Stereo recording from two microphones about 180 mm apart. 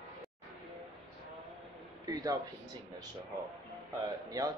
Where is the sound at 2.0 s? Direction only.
20° right (ahead or behind).